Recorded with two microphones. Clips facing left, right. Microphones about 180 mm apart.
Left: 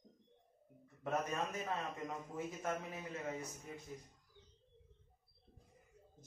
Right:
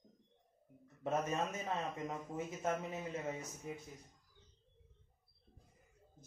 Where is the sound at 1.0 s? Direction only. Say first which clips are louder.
Right 2 dB; 20° right (ahead or behind).